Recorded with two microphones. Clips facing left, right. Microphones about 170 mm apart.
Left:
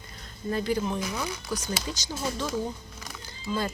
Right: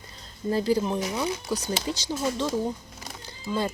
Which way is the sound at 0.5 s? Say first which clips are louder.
Right 4 dB; 30° right (ahead or behind).